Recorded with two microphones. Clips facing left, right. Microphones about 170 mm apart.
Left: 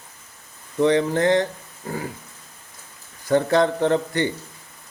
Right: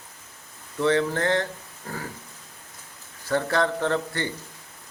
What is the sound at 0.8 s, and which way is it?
Speech, 20° left (ahead or behind).